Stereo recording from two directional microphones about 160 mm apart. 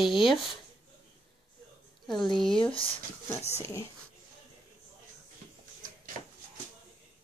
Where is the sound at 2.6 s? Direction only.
35° left (ahead or behind).